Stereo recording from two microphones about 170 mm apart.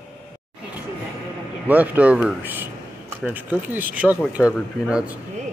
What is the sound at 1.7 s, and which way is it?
Speech, 10° right (ahead or behind).